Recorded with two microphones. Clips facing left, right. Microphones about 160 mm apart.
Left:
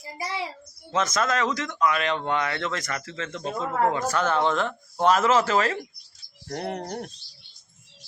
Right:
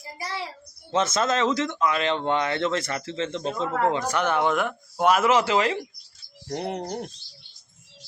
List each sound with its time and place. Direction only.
0.2 s a child's voice: 20° left (ahead or behind)
0.9 s speech: 30° right (ahead or behind)
4.1 s speech: 15° right (ahead or behind)